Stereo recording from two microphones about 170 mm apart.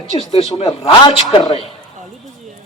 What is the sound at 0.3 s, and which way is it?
Speech, 35° left (ahead or behind).